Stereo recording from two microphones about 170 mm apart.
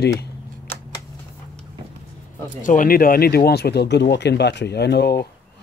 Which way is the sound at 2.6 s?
55° left (ahead or behind).